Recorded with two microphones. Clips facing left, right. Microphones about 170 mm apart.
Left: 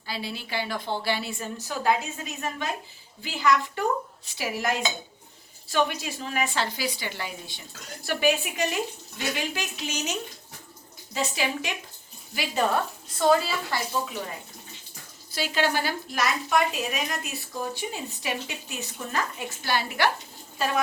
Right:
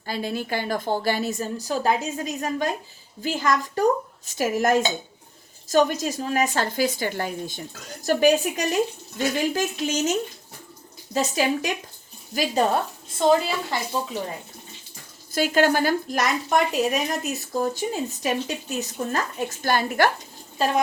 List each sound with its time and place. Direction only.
0.0 s a woman's voice: 50° right (ahead or behind)
13.1 s a woman's voice: 20° right (ahead or behind)
15.3 s a woman's voice: 50° right (ahead or behind)